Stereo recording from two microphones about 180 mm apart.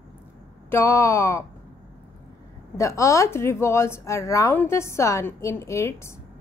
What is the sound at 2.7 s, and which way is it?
A woman's voice, 15° left (ahead or behind).